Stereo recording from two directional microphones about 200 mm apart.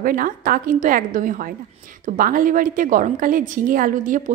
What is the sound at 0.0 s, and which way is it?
A woman's voice, 45° right (ahead or behind).